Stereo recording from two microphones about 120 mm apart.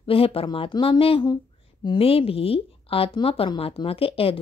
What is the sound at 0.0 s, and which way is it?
A woman's voice, 50° left (ahead or behind).